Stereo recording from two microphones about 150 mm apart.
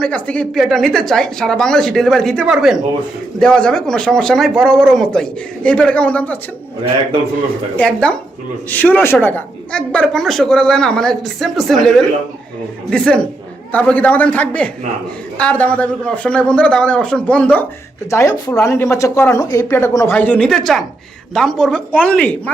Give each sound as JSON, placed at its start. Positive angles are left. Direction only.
{"t": 0.0, "sound": "speech", "side_deg": 10}
{"t": 7.8, "sound": "a man's voice", "side_deg": 5}
{"t": 18.1, "sound": "a man's voice", "side_deg": 20}